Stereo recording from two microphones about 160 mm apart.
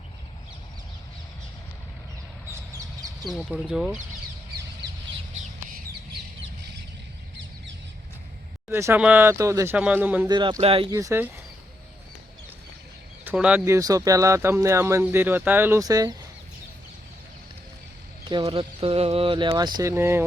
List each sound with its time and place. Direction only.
3.2 s speech: centre (ahead or behind)
8.7 s speech: 15° right (ahead or behind)
10.2 s speech: 30° right (ahead or behind)
10.9 s speech: 20° right (ahead or behind)
13.2 s speech: 10° right (ahead or behind)
13.7 s speech: 20° right (ahead or behind)
18.3 s speech: 30° right (ahead or behind)
19.9 s speech: 15° right (ahead or behind)